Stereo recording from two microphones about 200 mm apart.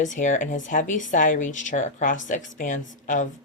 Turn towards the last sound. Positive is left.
turn(degrees=40)  # may be behind; listen again after turning